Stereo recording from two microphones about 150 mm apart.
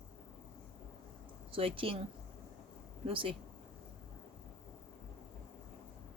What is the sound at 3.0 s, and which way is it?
Speech, 35° right (ahead or behind).